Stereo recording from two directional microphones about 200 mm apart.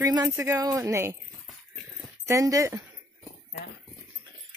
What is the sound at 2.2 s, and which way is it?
Speech, 15° right (ahead or behind).